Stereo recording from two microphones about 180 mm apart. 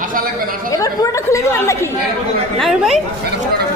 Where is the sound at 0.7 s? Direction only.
20° left (ahead or behind).